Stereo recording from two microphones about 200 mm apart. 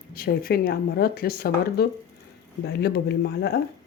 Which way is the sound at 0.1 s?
45° left (ahead or behind).